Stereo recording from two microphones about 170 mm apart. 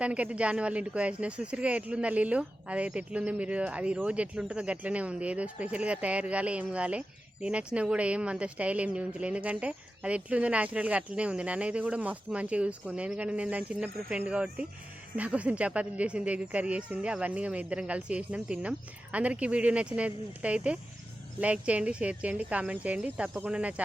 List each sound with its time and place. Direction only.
0.0 s speech: 5° right (ahead or behind)